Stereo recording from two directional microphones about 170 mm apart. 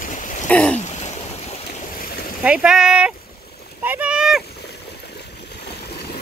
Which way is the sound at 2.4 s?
5° right (ahead or behind).